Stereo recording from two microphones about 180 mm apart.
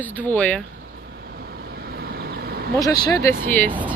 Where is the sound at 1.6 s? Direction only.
55° right (ahead or behind).